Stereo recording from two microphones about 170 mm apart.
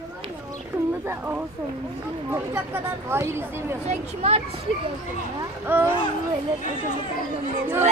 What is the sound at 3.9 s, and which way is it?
Speech, 40° right (ahead or behind).